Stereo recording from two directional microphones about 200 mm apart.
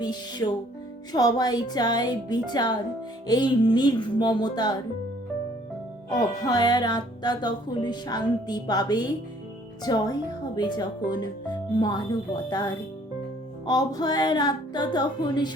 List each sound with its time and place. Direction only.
0.0 s speech: 20° left (ahead or behind)
6.1 s speech: 20° left (ahead or behind)